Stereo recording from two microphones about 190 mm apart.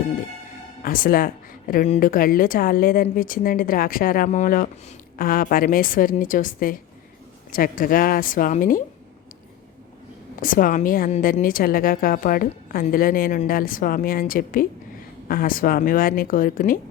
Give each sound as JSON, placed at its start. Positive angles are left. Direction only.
{"t": 0.8, "sound": "a woman's voice", "side_deg": 50}
{"t": 10.4, "sound": "a woman's voice", "side_deg": 45}